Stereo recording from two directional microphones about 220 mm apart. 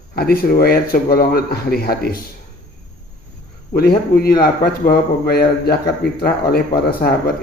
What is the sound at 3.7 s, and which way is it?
A man's voice, 45° left (ahead or behind).